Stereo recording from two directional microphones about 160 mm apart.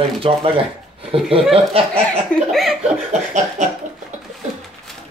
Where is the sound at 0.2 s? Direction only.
35° right (ahead or behind).